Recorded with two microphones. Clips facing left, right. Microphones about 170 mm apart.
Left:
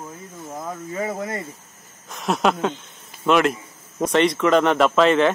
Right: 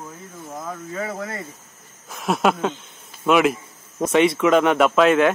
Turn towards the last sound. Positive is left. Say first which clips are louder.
# right 1 dB
turn(degrees=-5)  # may be behind; listen again after turning